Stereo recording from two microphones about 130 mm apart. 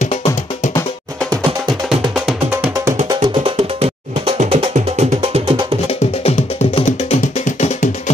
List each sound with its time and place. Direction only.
0.0 s music: 60° left (ahead or behind)
1.9 s music: 5° right (ahead or behind)
3.1 s music: 45° right (ahead or behind)
6.2 s music: 55° left (ahead or behind); by 7.9 s 70° left (ahead or behind)